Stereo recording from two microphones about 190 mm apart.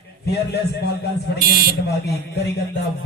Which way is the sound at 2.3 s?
60° left (ahead or behind).